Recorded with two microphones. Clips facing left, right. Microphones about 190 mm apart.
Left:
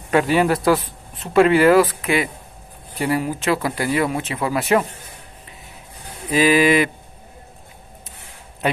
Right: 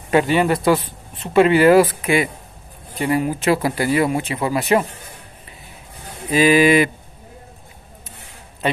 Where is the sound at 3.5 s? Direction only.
30° right (ahead or behind).